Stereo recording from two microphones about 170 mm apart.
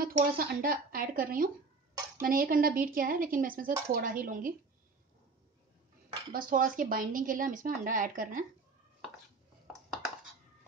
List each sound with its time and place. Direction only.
0.0 s speech: 55° right (ahead or behind)
6.3 s speech: 55° right (ahead or behind)